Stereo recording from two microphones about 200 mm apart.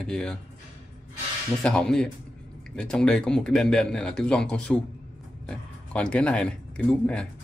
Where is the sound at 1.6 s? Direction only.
5° left (ahead or behind).